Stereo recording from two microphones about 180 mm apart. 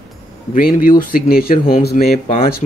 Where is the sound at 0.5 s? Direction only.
50° left (ahead or behind).